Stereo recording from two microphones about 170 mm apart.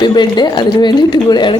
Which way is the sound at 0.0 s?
25° left (ahead or behind).